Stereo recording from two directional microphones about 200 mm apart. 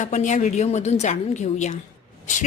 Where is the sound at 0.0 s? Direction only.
35° left (ahead or behind).